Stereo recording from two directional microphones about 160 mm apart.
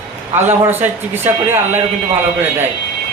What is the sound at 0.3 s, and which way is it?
Speech, 10° right (ahead or behind).